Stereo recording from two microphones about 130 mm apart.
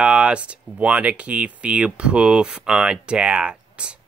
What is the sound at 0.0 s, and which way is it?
Speech, 10° right (ahead or behind).